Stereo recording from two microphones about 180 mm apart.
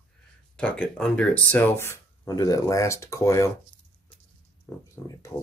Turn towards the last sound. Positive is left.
turn(degrees=15)  # may be behind; listen again after turning